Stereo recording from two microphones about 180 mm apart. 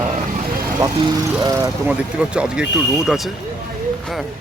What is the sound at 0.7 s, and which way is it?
Speech, 20° right (ahead or behind).